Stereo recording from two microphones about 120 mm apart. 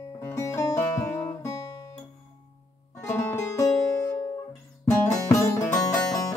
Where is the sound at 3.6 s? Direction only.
30° left (ahead or behind).